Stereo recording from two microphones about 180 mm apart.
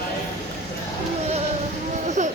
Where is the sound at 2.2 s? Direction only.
45° right (ahead or behind).